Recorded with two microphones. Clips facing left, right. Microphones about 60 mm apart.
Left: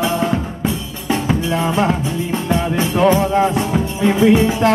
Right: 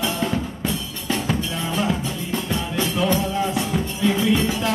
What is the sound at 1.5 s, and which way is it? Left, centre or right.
Music, left.